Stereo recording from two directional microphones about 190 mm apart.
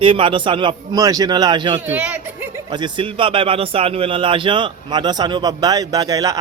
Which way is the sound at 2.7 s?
25° right (ahead or behind).